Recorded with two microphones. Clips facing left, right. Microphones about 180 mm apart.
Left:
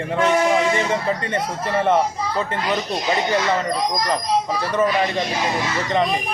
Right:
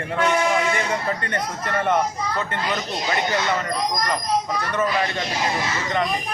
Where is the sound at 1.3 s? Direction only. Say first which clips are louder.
Left 3 dB; 30° left (ahead or behind).